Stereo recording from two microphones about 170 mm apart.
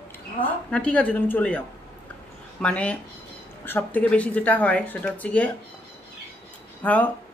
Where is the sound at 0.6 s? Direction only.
5° left (ahead or behind).